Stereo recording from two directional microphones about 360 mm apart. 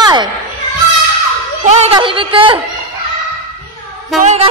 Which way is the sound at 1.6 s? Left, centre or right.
Centre.